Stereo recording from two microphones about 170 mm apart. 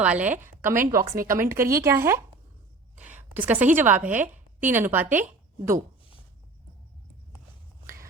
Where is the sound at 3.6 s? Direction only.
10° right (ahead or behind).